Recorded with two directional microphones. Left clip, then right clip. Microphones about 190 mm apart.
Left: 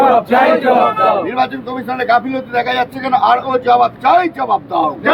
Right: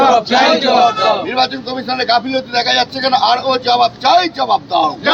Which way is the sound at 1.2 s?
10° right (ahead or behind).